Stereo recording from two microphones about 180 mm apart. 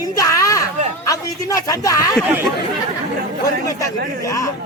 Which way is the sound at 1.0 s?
20° left (ahead or behind).